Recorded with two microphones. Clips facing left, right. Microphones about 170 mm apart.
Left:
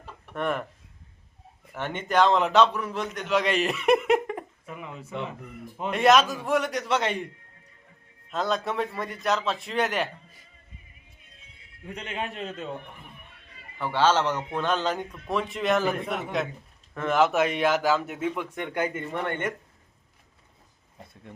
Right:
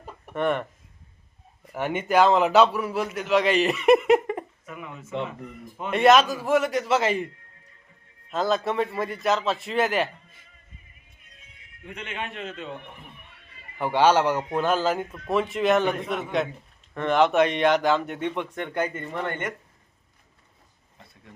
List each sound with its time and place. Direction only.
0.3 s a man's voice: centre (ahead or behind)
1.7 s a man's voice: 10° right (ahead or behind)
5.9 s a man's voice: centre (ahead or behind)
8.3 s a man's voice: centre (ahead or behind)
11.3 s speech: 30° left (ahead or behind)
13.7 s a man's voice: 15° right (ahead or behind); by 19.0 s 10° left (ahead or behind)